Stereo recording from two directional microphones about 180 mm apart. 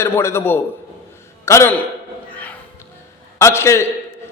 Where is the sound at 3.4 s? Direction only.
15° left (ahead or behind).